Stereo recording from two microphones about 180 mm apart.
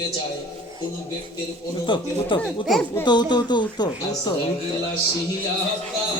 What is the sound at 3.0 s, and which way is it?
Speech, 25° left (ahead or behind).